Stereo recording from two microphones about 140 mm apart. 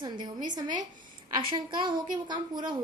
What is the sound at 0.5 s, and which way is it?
A woman's voice, 30° right (ahead or behind).